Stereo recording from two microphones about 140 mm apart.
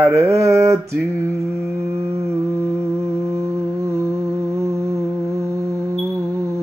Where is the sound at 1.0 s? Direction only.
20° right (ahead or behind).